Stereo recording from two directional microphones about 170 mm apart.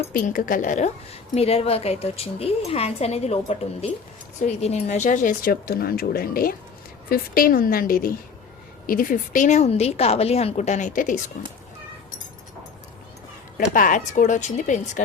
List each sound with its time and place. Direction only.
0.1 s a woman's voice: 55° left (ahead or behind)
13.7 s a woman's voice: 50° left (ahead or behind)